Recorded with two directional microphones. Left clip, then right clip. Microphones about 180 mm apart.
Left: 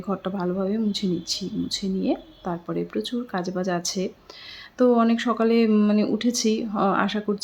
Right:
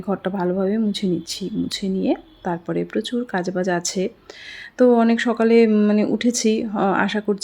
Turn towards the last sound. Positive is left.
turn(degrees=-20)  # may be behind; listen again after turning